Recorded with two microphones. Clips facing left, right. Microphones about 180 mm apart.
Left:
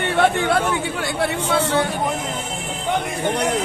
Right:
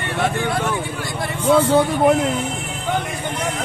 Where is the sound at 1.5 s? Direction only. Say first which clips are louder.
Right 8 dB; 70° left (ahead or behind).